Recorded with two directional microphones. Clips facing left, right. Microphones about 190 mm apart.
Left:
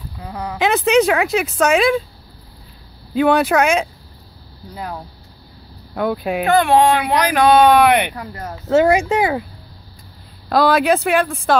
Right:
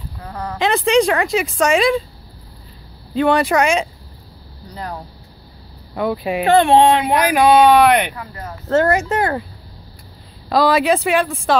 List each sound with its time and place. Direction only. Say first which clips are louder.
0.2 s speech: left 1 dB; 10° left (ahead or behind)
3.2 s speech: left 1 dB; centre (ahead or behind)
6.4 s speech: right 2 dB; 30° right (ahead or behind)
7.3 s speech: even; 5° right (ahead or behind)
8.1 s speech: left 2 dB; 45° left (ahead or behind)
8.6 s speech: left 2 dB; 10° left (ahead or behind)
10.5 s speech: even; centre (ahead or behind)